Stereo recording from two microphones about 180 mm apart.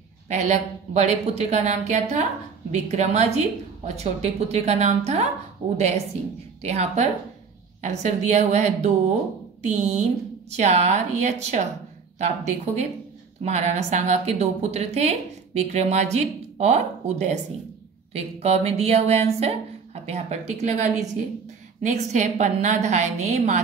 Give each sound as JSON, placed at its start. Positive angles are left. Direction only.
{"t": 0.3, "sound": "a woman's voice", "side_deg": -40}
{"t": 6.6, "sound": "a woman's voice", "side_deg": -35}